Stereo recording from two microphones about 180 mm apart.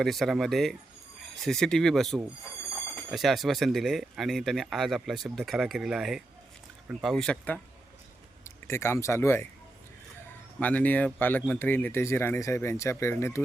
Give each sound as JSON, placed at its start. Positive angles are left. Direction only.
{"t": 0.0, "sound": "speech", "side_deg": 0}
{"t": 10.6, "sound": "speech", "side_deg": 10}